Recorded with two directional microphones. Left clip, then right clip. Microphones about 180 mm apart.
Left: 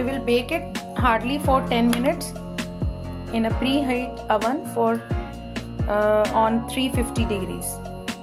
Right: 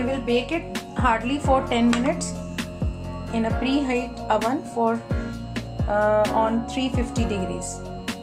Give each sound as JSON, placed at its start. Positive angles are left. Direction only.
{"t": 0.0, "sound": "music", "side_deg": 45}
{"t": 1.0, "sound": "a woman's voice", "side_deg": 45}
{"t": 3.3, "sound": "a woman's voice", "side_deg": 30}